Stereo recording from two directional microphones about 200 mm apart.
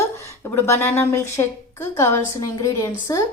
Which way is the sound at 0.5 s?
10° left (ahead or behind).